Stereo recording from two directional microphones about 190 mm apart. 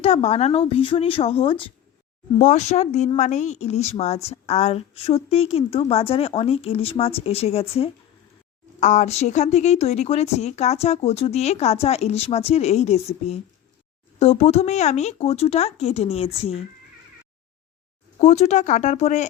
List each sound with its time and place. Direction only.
0.0 s a woman's voice: 30° left (ahead or behind)
18.2 s a woman's voice: 35° left (ahead or behind)